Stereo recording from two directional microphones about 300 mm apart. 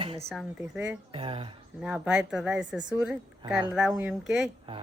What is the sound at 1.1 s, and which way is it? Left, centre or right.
Speech, centre.